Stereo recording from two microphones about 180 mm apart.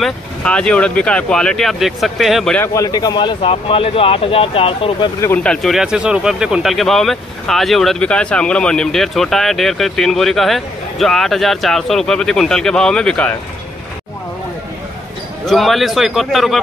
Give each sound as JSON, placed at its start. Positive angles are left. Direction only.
{"t": 0.0, "sound": "speech", "side_deg": 5}
{"t": 2.6, "sound": "speech", "side_deg": 20}
{"t": 5.2, "sound": "speech", "side_deg": 10}
{"t": 15.4, "sound": "speech", "side_deg": 0}